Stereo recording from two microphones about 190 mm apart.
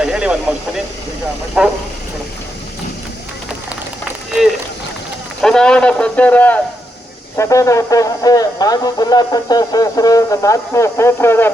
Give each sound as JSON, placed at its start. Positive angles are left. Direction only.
{"t": 0.0, "sound": "vehicle", "side_deg": -5}
{"t": 1.6, "sound": "speech", "side_deg": -5}
{"t": 5.4, "sound": "speech", "side_deg": 5}